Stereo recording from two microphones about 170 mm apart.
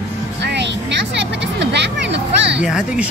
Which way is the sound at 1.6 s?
90° right.